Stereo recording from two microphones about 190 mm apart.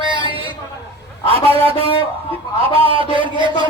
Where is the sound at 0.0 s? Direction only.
25° right (ahead or behind).